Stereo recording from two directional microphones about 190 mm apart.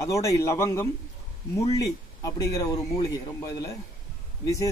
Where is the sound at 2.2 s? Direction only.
15° left (ahead or behind).